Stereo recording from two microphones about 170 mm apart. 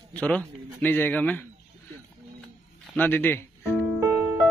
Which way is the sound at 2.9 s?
10° left (ahead or behind).